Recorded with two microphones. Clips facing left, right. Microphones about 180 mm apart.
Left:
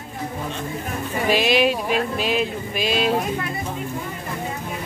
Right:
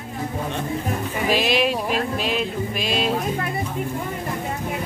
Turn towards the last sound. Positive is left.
turn(degrees=0)  # may be behind; listen again after turning